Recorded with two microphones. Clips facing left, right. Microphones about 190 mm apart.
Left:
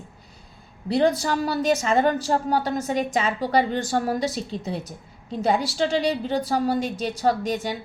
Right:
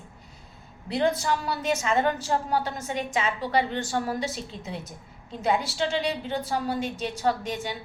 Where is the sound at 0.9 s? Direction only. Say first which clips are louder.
Left 4 dB; 35° left (ahead or behind).